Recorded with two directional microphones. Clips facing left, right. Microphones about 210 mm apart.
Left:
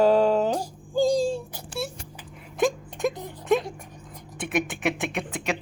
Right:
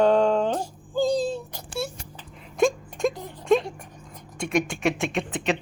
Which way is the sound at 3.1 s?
20° left (ahead or behind).